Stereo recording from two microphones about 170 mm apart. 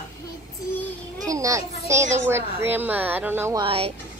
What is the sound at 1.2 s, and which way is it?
A woman's voice, 20° right (ahead or behind).